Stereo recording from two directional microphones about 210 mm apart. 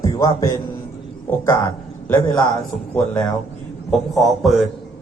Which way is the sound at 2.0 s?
15° left (ahead or behind).